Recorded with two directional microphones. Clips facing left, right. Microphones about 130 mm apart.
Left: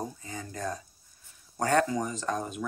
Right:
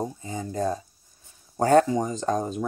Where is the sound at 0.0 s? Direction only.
25° right (ahead or behind).